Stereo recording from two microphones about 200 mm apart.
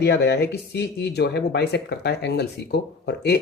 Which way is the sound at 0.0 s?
55° left (ahead or behind).